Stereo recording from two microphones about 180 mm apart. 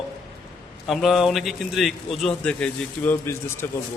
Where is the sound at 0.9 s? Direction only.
Centre (ahead or behind).